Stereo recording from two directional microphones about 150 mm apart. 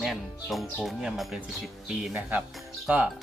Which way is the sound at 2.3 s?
10° right (ahead or behind).